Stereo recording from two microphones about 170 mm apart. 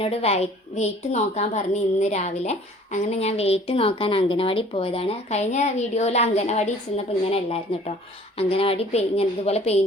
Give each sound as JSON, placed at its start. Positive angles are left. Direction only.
{"t": 0.0, "sound": "a woman's voice", "side_deg": 35}